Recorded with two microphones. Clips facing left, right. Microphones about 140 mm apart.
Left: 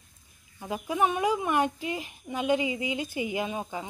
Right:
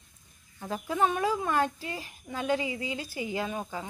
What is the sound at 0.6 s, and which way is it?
A woman's voice, 10° left (ahead or behind).